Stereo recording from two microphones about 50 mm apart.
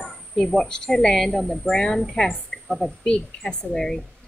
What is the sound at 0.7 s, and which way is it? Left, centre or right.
A woman's voice, centre.